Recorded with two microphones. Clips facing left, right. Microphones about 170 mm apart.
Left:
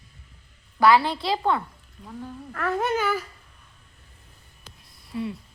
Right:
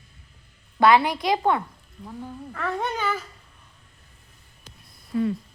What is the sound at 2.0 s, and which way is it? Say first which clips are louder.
Child singing: right 1 dB; centre (ahead or behind).